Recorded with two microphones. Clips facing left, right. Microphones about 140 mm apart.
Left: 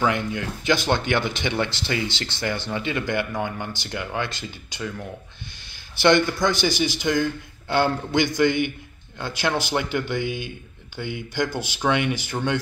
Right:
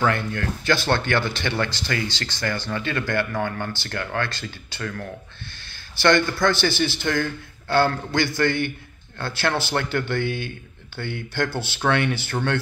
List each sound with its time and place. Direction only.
0.0 s speech: 15° left (ahead or behind)